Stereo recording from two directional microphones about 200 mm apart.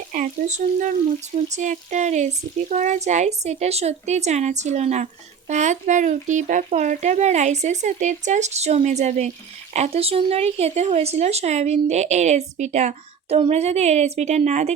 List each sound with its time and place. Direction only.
0.1 s a woman's voice: 40° right (ahead or behind)